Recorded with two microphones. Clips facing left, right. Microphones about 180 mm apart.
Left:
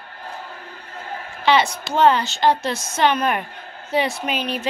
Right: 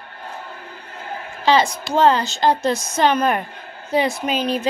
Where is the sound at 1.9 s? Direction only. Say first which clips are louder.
Right 1 dB; 35° right (ahead or behind).